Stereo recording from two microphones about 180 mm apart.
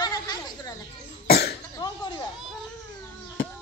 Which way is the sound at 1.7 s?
25° left (ahead or behind).